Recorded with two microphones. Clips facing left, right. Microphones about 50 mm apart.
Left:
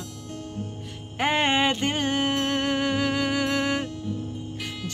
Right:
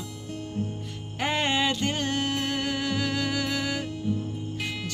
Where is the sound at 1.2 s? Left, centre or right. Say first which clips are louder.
Left 3 dB; left.